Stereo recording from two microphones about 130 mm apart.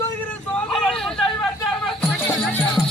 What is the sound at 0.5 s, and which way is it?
Speech, 5° left (ahead or behind).